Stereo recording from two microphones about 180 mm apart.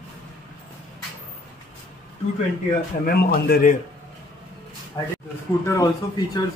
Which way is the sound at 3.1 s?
60° left (ahead or behind).